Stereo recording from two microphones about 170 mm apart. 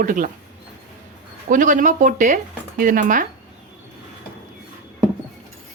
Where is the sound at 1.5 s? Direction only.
50° right (ahead or behind).